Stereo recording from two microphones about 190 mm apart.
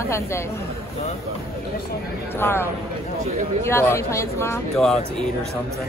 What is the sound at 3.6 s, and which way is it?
Speech, 15° left (ahead or behind).